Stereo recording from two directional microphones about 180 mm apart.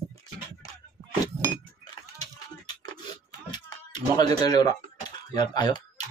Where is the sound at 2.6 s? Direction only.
25° left (ahead or behind).